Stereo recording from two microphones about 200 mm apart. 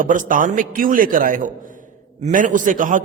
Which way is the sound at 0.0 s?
40° right (ahead or behind).